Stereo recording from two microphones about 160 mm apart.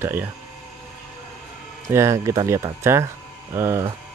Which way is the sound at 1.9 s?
20° right (ahead or behind).